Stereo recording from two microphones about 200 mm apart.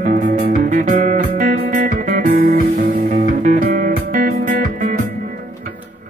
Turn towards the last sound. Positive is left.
turn(degrees=-40)  # may be behind; listen again after turning